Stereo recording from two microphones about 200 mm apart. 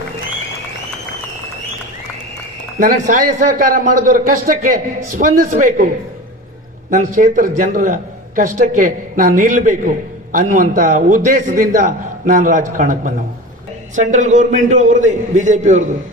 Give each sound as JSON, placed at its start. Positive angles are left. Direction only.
{"t": 2.8, "sound": "a man's voice", "side_deg": -40}
{"t": 6.9, "sound": "a man's voice", "side_deg": -40}